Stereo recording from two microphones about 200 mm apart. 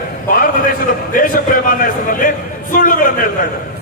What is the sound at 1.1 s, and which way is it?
A man's voice, 45° left (ahead or behind).